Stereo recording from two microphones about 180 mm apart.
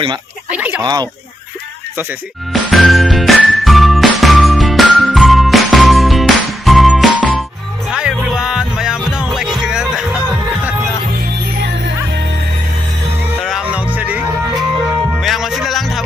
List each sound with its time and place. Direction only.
0.5 s fowl: 10° right (ahead or behind)
0.8 s speech: 20° right (ahead or behind)
2.5 s music: centre (ahead or behind)
11.6 s music: 75° right (ahead or behind)
13.4 s music: 5° right (ahead or behind)